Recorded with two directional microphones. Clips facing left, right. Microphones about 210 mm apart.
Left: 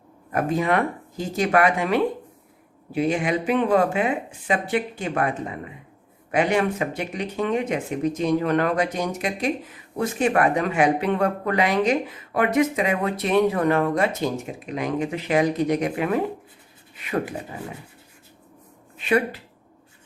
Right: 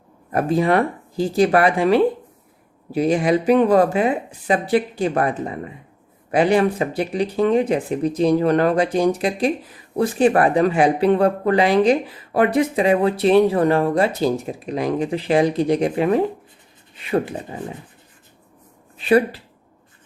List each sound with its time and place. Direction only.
0.3 s speech: 35° right (ahead or behind)
18.9 s speech: 35° right (ahead or behind)